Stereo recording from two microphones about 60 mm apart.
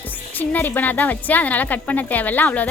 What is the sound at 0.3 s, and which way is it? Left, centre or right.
A woman's voice, left.